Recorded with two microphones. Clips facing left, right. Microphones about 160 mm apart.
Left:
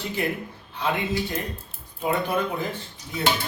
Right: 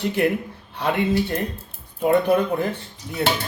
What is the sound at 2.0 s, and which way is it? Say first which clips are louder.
Speech: right 7 dB; 60° right (ahead or behind).